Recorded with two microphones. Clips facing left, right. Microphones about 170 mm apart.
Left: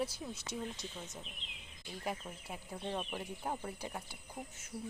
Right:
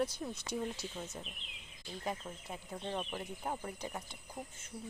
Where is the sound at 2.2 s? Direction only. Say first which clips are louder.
Right 1 dB; 5° left (ahead or behind).